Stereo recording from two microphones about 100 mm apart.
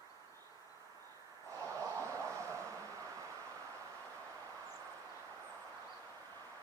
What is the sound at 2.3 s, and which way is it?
Vehicle, 30° right (ahead or behind).